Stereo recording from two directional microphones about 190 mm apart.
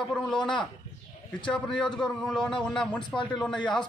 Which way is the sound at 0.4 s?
25° left (ahead or behind).